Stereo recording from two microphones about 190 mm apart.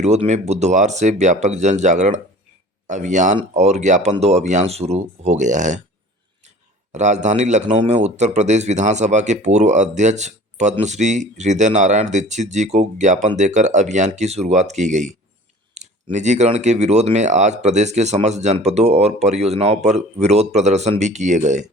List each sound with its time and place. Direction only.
0.0 s speech: 35° right (ahead or behind)
6.9 s speech: 40° right (ahead or behind)
16.1 s speech: 40° right (ahead or behind)